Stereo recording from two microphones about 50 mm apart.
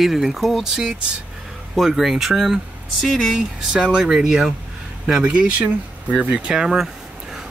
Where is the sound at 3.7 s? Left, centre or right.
Centre.